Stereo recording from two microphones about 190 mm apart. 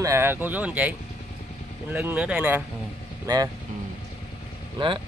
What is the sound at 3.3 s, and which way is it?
Speech, 20° right (ahead or behind).